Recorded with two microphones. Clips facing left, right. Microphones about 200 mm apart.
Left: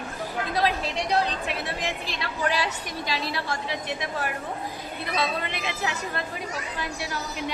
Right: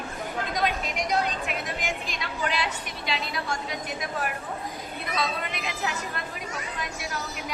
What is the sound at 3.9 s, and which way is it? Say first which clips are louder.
Speech: even; 25° left (ahead or behind).